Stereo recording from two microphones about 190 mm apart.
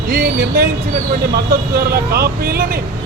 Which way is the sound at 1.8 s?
55° right (ahead or behind).